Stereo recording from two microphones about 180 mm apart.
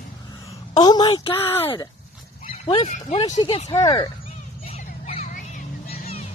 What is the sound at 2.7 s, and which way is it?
Speech, 40° left (ahead or behind).